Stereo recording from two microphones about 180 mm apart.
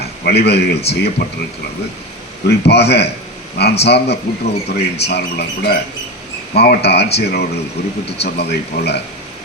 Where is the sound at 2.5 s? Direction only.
65° left (ahead or behind).